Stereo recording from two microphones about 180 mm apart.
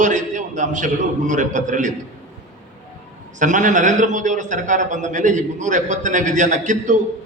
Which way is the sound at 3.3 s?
45° right (ahead or behind).